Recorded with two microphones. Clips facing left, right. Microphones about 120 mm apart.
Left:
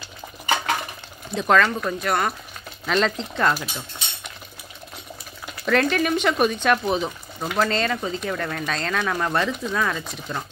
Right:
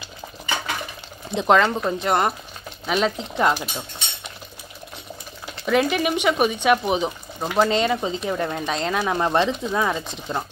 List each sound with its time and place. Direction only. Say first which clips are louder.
1.3 s speech: right 2 dB; 20° right (ahead or behind)
2.9 s speech: even; 10° right (ahead or behind)
5.7 s speech: even; 10° right (ahead or behind)